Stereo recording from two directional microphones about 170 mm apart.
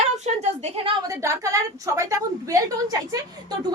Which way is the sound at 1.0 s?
15° right (ahead or behind).